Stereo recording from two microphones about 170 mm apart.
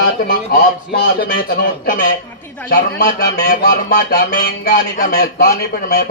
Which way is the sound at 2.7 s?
75° left (ahead or behind).